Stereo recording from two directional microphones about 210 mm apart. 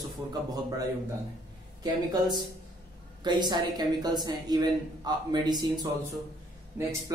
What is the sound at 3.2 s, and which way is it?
A woman's voice, 20° right (ahead or behind).